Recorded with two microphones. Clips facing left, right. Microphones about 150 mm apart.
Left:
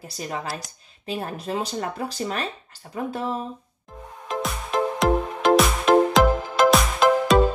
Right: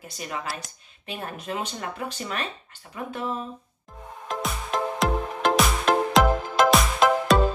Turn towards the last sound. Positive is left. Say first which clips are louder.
# left 2 dB
turn(degrees=0)  # may be behind; listen again after turning